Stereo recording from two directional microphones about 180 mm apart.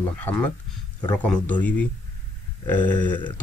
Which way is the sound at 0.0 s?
10° left (ahead or behind).